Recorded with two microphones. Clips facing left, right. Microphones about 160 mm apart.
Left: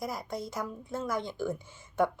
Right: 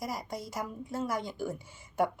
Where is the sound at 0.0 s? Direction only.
10° right (ahead or behind).